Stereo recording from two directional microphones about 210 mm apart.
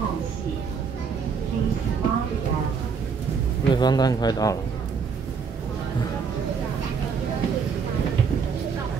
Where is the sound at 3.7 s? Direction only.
20° left (ahead or behind).